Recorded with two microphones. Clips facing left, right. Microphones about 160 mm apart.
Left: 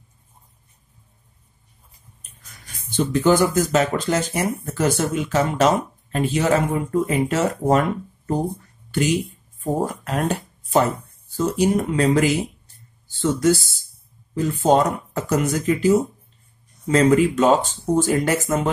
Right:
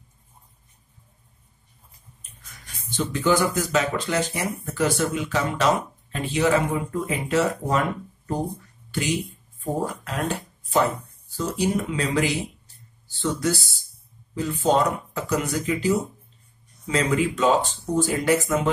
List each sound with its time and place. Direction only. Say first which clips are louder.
3.0 s speech: left 5 dB; 50° left (ahead or behind)
8.9 s speech: left 5 dB; 50° left (ahead or behind)